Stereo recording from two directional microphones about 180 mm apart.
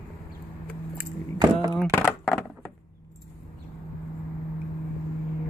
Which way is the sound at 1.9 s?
10° left (ahead or behind).